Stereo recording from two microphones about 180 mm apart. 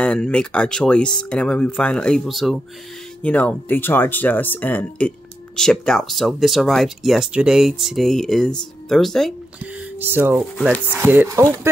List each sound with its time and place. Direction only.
0.0 s speech: 5° left (ahead or behind)
9.6 s speech: 10° right (ahead or behind)